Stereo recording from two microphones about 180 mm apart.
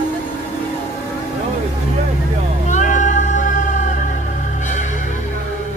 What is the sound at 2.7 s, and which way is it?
Music, 45° left (ahead or behind).